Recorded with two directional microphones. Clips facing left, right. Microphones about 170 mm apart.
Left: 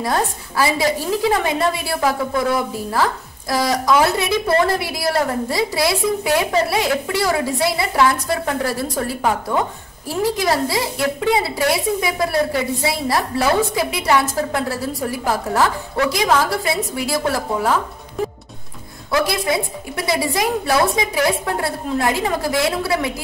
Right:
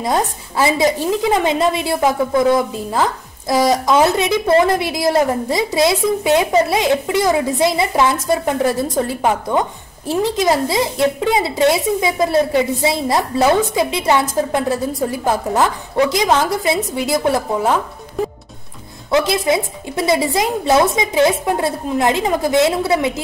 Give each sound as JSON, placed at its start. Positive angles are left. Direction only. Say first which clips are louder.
{"t": 0.0, "sound": "a woman's voice", "louder": "right 2 dB", "side_deg": -20}
{"t": 19.0, "sound": "a woman's voice", "louder": "right 4 dB", "side_deg": -20}